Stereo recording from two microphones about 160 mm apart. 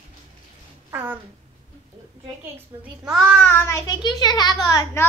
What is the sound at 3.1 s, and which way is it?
A child's voice, centre (ahead or behind).